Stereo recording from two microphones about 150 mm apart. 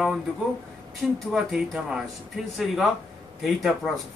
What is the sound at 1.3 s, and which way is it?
Speech, centre (ahead or behind).